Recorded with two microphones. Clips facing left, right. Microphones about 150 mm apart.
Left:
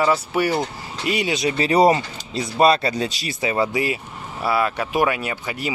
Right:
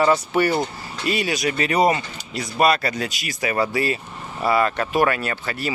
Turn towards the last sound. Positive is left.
turn(degrees=15)  # may be behind; listen again after turning